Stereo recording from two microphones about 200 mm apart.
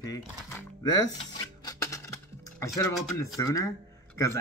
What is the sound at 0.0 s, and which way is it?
Speech, 20° left (ahead or behind).